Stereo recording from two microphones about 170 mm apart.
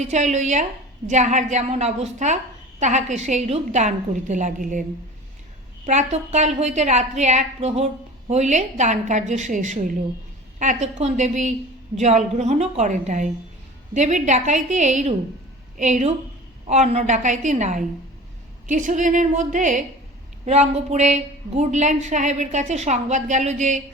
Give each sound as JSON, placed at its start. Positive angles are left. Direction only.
{"t": 0.0, "sound": "a woman's voice", "side_deg": -45}